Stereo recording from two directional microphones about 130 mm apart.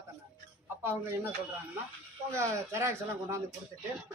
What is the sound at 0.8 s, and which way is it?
Speech, 15° right (ahead or behind).